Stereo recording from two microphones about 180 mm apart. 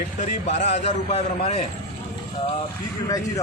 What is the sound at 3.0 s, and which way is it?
Speech, 20° left (ahead or behind).